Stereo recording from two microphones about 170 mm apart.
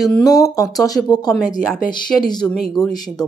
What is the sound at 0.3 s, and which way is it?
Speech, 20° left (ahead or behind).